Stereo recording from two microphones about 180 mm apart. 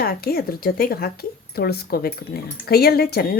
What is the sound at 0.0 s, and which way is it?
Speech, 55° left (ahead or behind).